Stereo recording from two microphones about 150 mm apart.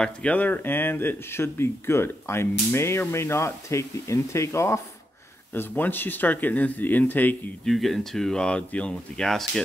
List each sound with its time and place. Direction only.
0.0 s speech: 10° left (ahead or behind)
7.6 s speech: centre (ahead or behind)